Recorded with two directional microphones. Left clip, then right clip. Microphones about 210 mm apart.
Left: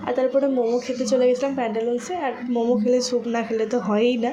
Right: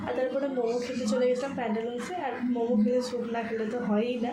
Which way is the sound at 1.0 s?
35° left (ahead or behind).